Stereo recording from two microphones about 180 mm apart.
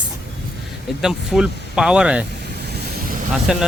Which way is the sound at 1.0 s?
5° right (ahead or behind).